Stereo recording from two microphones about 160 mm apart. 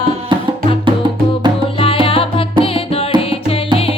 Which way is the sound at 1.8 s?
35° left (ahead or behind).